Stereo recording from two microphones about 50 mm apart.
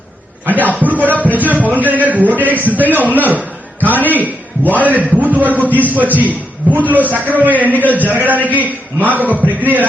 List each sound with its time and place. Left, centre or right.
0.6 s music: right
1.5 s a man's voice: right